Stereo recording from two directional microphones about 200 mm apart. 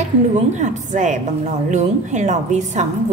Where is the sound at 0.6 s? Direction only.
40° right (ahead or behind).